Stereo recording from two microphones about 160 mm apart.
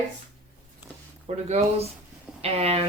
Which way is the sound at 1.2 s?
40° right (ahead or behind).